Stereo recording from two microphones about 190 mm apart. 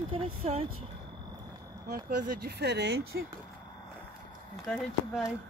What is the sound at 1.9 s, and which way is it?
Speech, 50° right (ahead or behind).